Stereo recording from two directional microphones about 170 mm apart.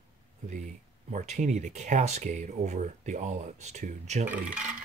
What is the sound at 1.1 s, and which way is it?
Speech, 45° right (ahead or behind).